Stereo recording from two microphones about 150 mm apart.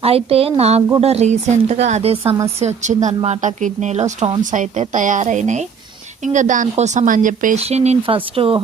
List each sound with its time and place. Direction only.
0.0 s a woman's voice: 40° right (ahead or behind)
4.2 s speech: 35° right (ahead or behind)
4.5 s a woman's voice: 50° right (ahead or behind)
7.6 s speech: 45° right (ahead or behind)